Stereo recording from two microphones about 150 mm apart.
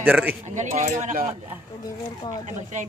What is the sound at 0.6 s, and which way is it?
Speech, 55° right (ahead or behind).